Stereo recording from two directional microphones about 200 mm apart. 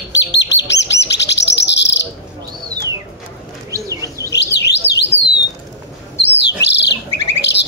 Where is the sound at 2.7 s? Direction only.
15° right (ahead or behind).